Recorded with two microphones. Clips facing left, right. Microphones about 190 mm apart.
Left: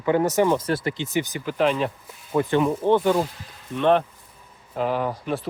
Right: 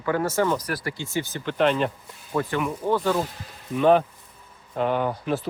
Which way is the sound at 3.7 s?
5° right (ahead or behind).